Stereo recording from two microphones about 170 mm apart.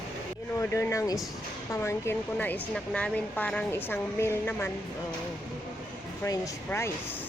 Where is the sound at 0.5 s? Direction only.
15° left (ahead or behind).